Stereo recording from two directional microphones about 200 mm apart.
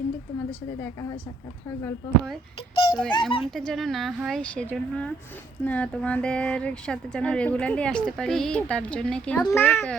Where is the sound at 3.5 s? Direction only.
Centre (ahead or behind).